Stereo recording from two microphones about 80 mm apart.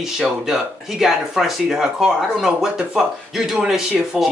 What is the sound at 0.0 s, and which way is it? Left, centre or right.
Speech, centre.